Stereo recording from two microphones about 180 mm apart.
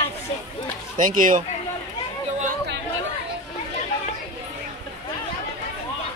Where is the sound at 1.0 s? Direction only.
45° right (ahead or behind).